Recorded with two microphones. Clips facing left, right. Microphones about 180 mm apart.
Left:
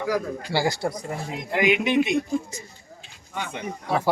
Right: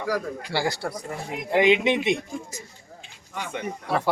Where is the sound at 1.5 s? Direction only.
25° right (ahead or behind).